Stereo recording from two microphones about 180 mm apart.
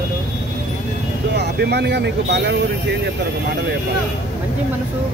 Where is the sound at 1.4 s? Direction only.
65° right (ahead or behind).